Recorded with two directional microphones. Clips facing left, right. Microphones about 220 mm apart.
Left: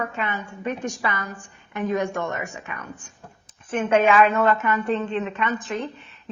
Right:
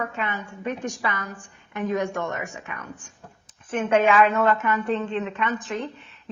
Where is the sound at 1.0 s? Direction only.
15° left (ahead or behind).